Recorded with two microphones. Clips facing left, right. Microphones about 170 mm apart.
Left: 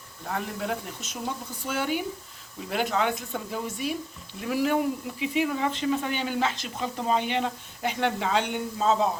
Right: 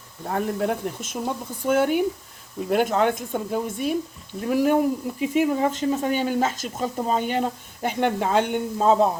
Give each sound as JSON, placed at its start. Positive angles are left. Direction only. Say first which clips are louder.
{"t": 0.3, "sound": "speech", "louder": "right 6 dB", "side_deg": -45}